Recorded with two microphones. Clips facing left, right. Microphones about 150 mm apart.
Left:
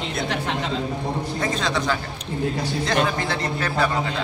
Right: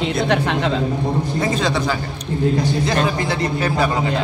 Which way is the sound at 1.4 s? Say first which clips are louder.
Right 4 dB; 5° right (ahead or behind).